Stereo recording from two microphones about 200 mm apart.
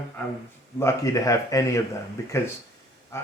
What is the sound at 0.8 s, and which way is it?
Speech, 15° left (ahead or behind).